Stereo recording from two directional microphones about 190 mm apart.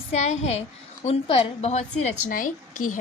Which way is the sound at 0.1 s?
35° left (ahead or behind).